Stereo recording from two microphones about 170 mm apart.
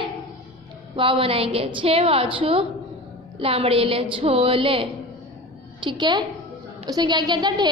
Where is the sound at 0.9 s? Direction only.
30° right (ahead or behind).